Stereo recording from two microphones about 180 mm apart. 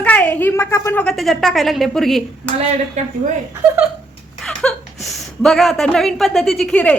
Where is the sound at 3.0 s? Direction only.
40° right (ahead or behind).